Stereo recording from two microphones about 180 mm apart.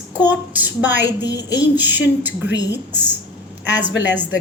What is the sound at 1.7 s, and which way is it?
Speech, 10° right (ahead or behind).